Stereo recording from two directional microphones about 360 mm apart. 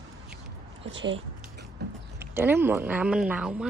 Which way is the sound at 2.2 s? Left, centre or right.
Centre.